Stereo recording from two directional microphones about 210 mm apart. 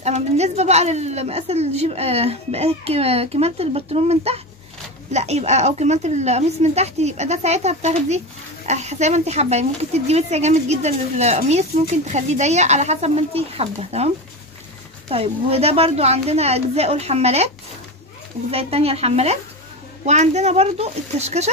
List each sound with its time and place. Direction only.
0.0 s a woman's voice: 30° right (ahead or behind)
18.5 s a woman's voice: 30° right (ahead or behind)